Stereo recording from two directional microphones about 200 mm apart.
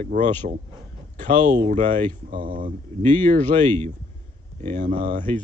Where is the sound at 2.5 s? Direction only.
40° right (ahead or behind).